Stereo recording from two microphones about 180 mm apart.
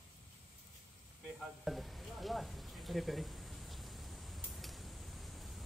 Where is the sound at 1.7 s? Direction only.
Centre (ahead or behind).